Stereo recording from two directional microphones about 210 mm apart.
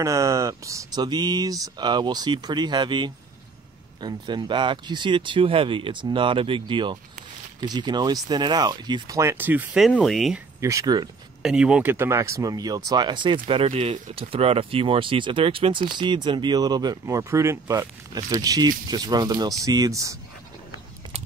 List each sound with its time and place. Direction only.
0.0 s speech: 15° right (ahead or behind); by 10.4 s centre (ahead or behind)
10.6 s speech: 15° right (ahead or behind)
11.4 s speech: 5° right (ahead or behind)